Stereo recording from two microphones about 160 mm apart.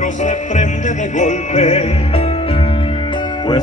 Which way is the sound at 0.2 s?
50° left (ahead or behind).